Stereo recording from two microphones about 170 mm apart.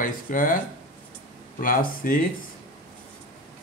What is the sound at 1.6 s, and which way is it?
Speech, 55° left (ahead or behind).